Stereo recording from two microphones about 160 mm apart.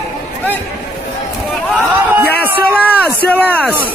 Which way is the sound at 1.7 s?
10° right (ahead or behind).